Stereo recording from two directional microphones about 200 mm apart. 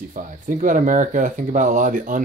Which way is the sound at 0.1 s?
40° right (ahead or behind).